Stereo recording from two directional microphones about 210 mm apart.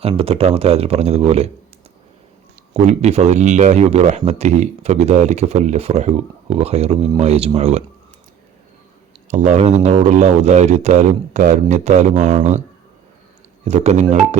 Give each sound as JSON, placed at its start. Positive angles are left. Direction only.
{"t": 0.0, "sound": "speech", "side_deg": -25}
{"t": 2.7, "sound": "speech", "side_deg": -30}
{"t": 9.3, "sound": "speech", "side_deg": -35}
{"t": 13.7, "sound": "speech", "side_deg": -30}